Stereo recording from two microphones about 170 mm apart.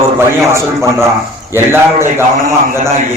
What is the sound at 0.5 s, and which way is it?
A man's voice, 15° right (ahead or behind).